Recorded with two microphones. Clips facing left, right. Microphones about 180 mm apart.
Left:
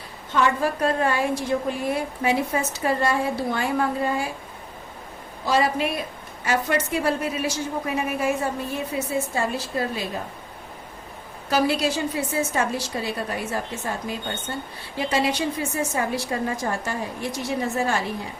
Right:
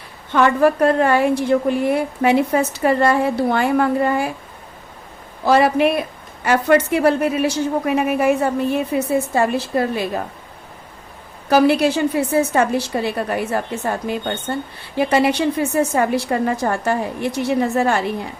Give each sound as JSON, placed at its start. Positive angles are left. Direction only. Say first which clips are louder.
{"t": 0.3, "sound": "a woman's voice", "louder": "right 8 dB", "side_deg": -60}
{"t": 5.5, "sound": "a woman's voice", "louder": "right 8 dB", "side_deg": -60}
{"t": 11.4, "sound": "a woman's voice", "louder": "right 8 dB", "side_deg": -60}